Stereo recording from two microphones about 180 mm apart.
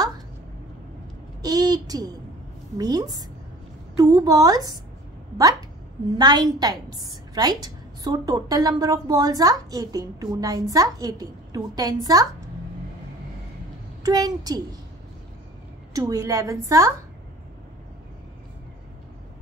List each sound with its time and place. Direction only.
1.4 s a woman's voice: 20° right (ahead or behind)
6.1 s a woman's voice: 20° right (ahead or behind)
14.0 s a woman's voice: 20° right (ahead or behind)
15.9 s a woman's voice: 20° right (ahead or behind)